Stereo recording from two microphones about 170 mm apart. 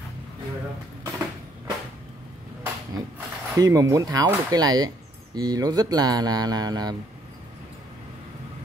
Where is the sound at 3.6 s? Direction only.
20° right (ahead or behind).